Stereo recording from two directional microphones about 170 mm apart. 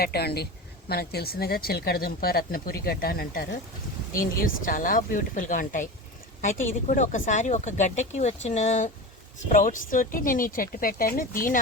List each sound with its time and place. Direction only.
0.0 s speech: 65° left (ahead or behind)